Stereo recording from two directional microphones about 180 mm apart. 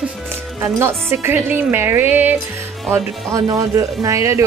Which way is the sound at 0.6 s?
15° right (ahead or behind).